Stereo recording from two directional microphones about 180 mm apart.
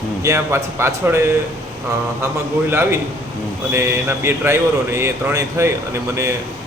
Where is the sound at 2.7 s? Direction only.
15° right (ahead or behind).